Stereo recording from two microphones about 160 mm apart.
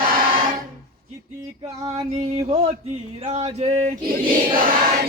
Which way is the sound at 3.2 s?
40° right (ahead or behind).